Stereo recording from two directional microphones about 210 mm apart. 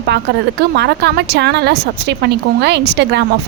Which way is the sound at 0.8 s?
55° right (ahead or behind).